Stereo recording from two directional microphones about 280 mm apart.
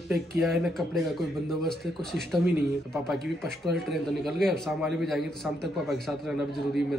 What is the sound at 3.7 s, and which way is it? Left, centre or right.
Speech, centre.